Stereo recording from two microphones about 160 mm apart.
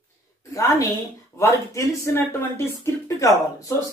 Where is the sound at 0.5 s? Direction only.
20° left (ahead or behind).